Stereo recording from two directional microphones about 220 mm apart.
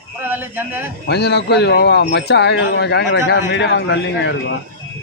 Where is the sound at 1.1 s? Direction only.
50° left (ahead or behind).